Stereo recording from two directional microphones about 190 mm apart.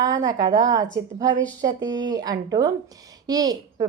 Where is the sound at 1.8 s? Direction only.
75° right (ahead or behind).